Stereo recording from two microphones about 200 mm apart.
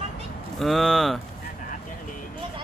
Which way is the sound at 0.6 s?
Centre (ahead or behind).